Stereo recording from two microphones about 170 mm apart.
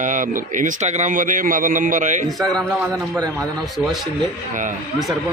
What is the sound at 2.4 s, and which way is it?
Speech, 5° left (ahead or behind).